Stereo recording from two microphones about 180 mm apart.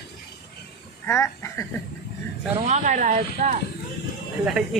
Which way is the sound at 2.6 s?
40° right (ahead or behind).